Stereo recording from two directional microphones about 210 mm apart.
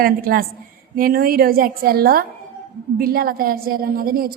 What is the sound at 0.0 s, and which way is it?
A woman's voice, 45° right (ahead or behind).